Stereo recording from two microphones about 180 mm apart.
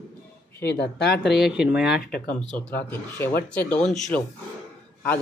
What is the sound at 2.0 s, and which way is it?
Speech, 55° left (ahead or behind).